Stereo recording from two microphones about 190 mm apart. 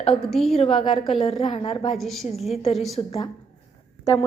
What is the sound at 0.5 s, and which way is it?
A woman's voice, 30° left (ahead or behind).